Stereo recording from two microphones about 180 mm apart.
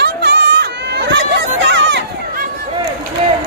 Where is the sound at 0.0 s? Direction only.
70° right (ahead or behind).